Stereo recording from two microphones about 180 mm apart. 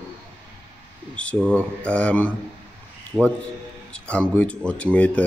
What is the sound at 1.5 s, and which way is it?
Speech, 5° left (ahead or behind).